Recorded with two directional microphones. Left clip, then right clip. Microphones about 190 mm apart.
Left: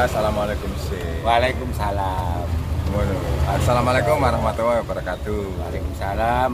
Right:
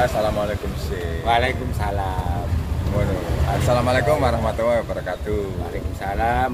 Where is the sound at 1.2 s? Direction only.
20° left (ahead or behind).